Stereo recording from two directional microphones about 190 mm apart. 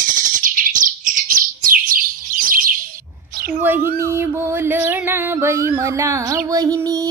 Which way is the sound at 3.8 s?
50° right (ahead or behind).